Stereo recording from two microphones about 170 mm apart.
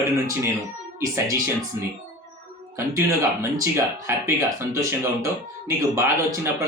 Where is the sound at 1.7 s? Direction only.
20° right (ahead or behind).